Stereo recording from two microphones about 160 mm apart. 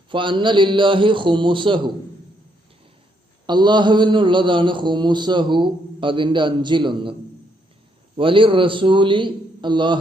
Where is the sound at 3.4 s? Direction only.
30° right (ahead or behind).